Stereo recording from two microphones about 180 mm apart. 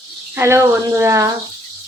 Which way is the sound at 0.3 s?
15° right (ahead or behind).